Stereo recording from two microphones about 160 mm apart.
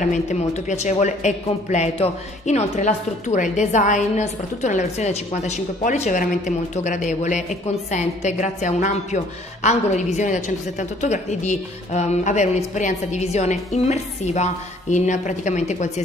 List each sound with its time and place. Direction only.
0.0 s speech: 50° left (ahead or behind)